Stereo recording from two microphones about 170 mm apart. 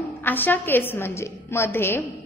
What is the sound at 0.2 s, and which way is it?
A woman's voice, 10° left (ahead or behind).